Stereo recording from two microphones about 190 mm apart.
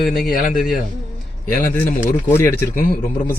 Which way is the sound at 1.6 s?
45° left (ahead or behind).